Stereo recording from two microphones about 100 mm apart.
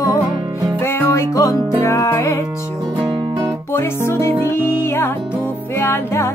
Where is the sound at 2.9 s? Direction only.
45° right (ahead or behind).